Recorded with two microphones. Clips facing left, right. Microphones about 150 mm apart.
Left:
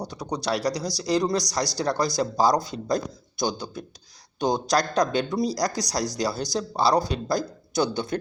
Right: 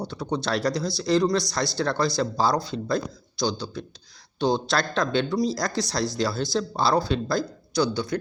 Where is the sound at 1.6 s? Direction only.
40° left (ahead or behind).